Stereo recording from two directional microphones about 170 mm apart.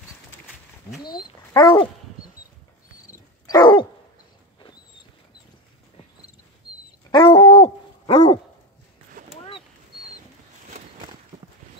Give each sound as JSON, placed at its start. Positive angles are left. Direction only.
{"t": 1.0, "sound": "speech", "side_deg": 25}
{"t": 3.4, "sound": "dog", "side_deg": 25}
{"t": 7.1, "sound": "dog", "side_deg": 30}